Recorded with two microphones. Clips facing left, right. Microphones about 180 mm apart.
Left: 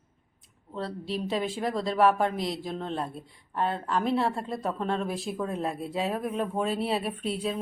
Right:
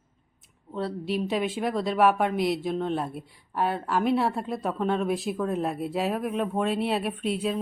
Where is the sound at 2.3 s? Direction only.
25° left (ahead or behind).